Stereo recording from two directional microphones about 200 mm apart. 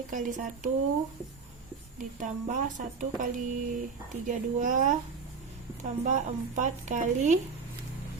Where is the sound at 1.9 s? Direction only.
40° right (ahead or behind).